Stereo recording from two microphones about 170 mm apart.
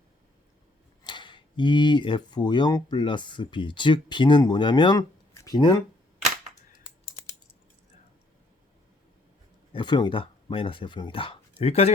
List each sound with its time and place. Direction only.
1.0 s speech: 25° left (ahead or behind)
9.7 s speech: 25° left (ahead or behind)